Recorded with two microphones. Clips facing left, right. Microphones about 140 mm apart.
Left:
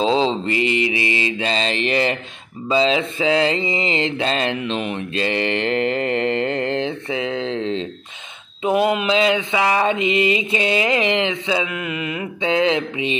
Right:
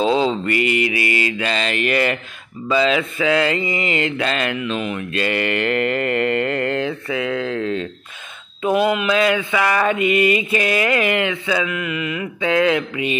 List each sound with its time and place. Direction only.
0.0 s mantra: 25° left (ahead or behind)